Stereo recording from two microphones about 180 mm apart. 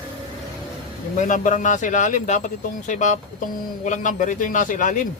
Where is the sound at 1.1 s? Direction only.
45° left (ahead or behind).